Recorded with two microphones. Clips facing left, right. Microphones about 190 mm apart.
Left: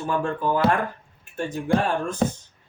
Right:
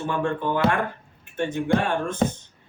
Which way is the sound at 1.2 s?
35° left (ahead or behind).